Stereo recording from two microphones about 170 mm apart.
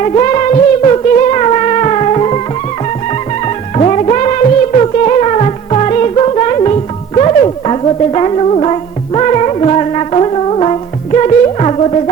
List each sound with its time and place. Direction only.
0.0 s music: 35° left (ahead or behind)
3.8 s music: 40° left (ahead or behind)